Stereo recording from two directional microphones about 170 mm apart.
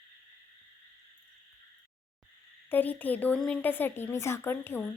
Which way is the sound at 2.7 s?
10° left (ahead or behind).